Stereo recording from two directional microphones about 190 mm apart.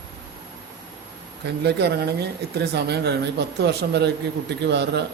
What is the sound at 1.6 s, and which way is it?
Speech, 60° right (ahead or behind).